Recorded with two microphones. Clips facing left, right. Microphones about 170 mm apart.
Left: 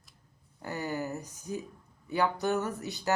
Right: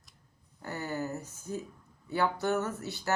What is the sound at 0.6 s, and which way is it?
Speech, 15° left (ahead or behind).